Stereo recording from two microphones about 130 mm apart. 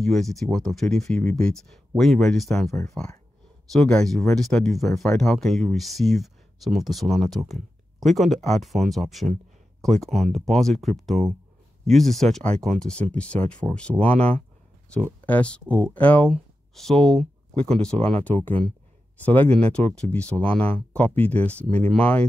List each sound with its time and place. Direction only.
0.0 s speech: centre (ahead or behind)
15.2 s speech: 10° left (ahead or behind)
17.6 s speech: 50° right (ahead or behind)
18.2 s speech: 15° left (ahead or behind)